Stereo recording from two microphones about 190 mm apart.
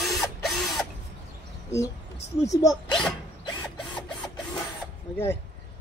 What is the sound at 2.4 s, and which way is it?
Speech, 15° left (ahead or behind).